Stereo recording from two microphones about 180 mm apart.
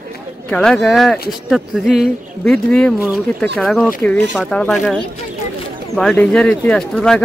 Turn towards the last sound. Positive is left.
turn(degrees=5)  # may be behind; listen again after turning